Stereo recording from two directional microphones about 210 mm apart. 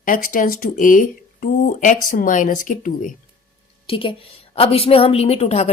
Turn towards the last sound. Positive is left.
turn(degrees=30)  # may be behind; listen again after turning